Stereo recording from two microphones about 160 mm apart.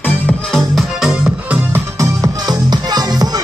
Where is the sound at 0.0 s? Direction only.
5° left (ahead or behind).